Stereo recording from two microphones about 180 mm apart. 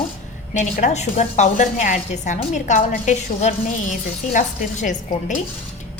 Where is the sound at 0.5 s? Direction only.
45° left (ahead or behind).